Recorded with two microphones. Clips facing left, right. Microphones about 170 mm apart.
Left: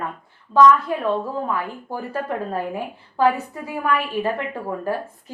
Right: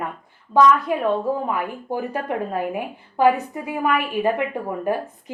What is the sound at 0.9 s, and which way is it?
A woman's voice, 15° right (ahead or behind).